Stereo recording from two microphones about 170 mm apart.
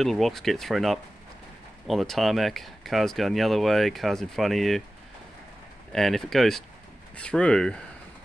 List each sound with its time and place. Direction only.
0.0 s speech: centre (ahead or behind)
5.9 s speech: centre (ahead or behind)